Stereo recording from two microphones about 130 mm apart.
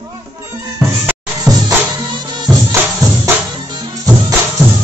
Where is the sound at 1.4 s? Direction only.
30° right (ahead or behind).